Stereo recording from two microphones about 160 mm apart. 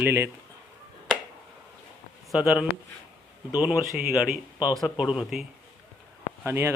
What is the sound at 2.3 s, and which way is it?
Speech, 5° right (ahead or behind).